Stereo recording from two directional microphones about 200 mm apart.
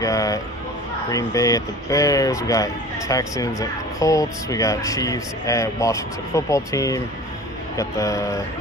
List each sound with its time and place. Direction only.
0.0 s speech: 15° left (ahead or behind)